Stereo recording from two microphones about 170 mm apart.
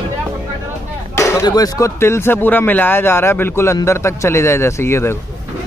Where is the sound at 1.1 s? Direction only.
15° left (ahead or behind).